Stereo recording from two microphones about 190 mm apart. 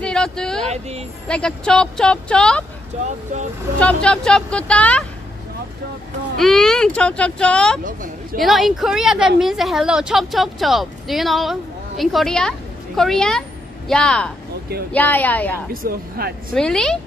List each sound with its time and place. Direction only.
0.0 s speech: 5° left (ahead or behind)
0.7 s a woman's voice: 35° right (ahead or behind)
1.2 s a woman's voice: 5° left (ahead or behind)
3.8 s a woman's voice: 5° left (ahead or behind)
6.3 s a woman's voice: centre (ahead or behind)
7.8 s speech: 45° right (ahead or behind)
8.4 s a woman's voice: centre (ahead or behind)
15.7 s speech: 50° right (ahead or behind)
16.5 s a woman's voice: 5° left (ahead or behind)